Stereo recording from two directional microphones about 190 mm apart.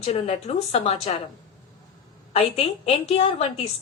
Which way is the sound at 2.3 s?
35° left (ahead or behind).